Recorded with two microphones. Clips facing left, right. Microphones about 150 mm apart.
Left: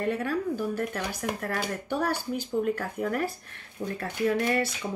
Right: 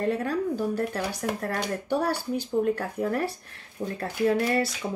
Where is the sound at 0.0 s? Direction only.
35° right (ahead or behind).